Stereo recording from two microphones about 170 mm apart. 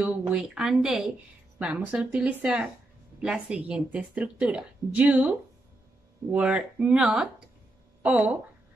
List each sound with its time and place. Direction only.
0.0 s speech: 5° right (ahead or behind)
6.3 s a woman's voice: 5° right (ahead or behind)